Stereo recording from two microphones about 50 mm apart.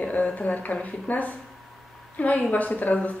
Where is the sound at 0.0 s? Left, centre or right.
Left.